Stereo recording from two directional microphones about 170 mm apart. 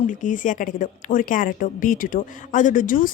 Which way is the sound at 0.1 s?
50° left (ahead or behind).